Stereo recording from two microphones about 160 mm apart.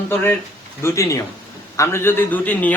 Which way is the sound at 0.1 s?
15° left (ahead or behind).